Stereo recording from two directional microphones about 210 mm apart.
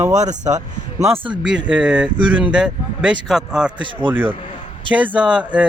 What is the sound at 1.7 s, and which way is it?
A man's voice, 5° right (ahead or behind).